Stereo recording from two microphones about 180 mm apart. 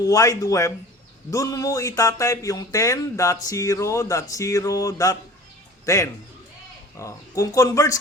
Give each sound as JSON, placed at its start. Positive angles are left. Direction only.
{"t": 0.0, "sound": "a man's voice", "side_deg": 20}